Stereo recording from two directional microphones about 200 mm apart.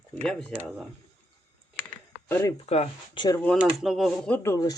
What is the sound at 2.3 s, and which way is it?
Speech, 10° left (ahead or behind).